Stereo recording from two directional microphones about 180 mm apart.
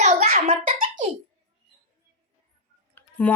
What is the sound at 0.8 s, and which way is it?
Laughter, 45° right (ahead or behind).